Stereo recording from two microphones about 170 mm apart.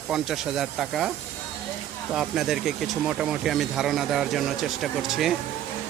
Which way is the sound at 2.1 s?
Centre (ahead or behind).